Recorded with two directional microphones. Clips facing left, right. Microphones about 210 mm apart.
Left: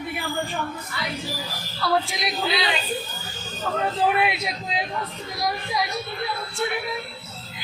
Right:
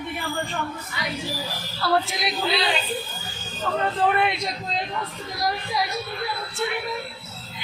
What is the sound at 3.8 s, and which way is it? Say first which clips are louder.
A man's voice: even; 5° left (ahead or behind).